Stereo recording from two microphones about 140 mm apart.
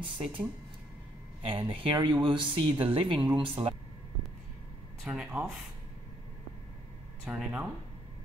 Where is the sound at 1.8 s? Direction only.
35° right (ahead or behind).